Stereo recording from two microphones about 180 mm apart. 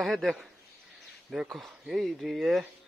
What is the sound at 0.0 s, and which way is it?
Speech, centre (ahead or behind).